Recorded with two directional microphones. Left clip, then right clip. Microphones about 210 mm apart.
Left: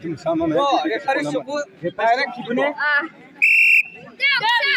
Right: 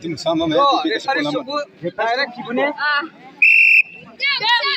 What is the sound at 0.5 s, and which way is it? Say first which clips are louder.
Speech: right 4 dB; 20° left (ahead or behind).